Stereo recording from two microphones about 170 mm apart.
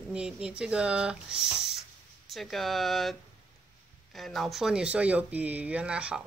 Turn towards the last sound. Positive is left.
turn(degrees=-5)  # may be behind; listen again after turning